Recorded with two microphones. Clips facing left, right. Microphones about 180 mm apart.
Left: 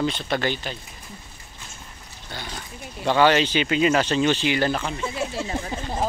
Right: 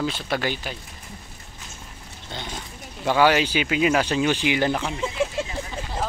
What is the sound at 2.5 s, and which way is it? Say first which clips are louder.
Speech: left 1 dB; 10° right (ahead or behind).